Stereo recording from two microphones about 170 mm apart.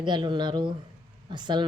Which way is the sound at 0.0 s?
30° right (ahead or behind).